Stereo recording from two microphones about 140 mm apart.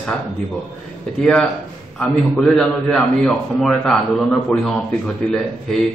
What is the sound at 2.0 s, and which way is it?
A man's voice, 5° left (ahead or behind).